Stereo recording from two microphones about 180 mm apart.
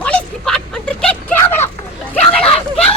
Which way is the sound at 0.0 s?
5° left (ahead or behind).